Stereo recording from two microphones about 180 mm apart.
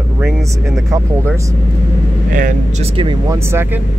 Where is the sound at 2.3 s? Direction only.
45° right (ahead or behind); by 3.8 s 15° right (ahead or behind).